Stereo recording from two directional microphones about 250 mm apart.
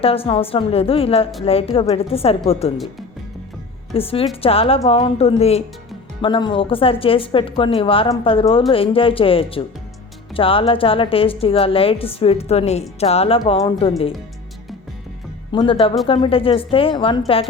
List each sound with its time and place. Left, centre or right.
0.0 s a woman's voice: left
3.9 s a woman's voice: left
15.5 s a woman's voice: left